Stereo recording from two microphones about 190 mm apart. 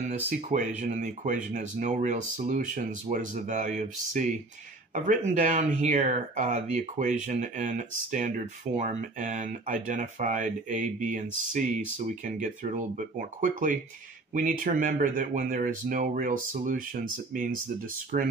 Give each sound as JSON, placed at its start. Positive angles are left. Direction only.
{"t": 0.5, "sound": "speech", "side_deg": -40}